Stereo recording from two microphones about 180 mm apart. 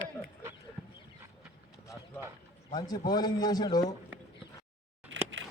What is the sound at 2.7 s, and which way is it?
Speech, 20° left (ahead or behind).